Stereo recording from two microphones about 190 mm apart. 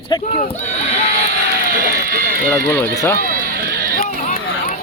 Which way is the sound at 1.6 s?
50° right (ahead or behind).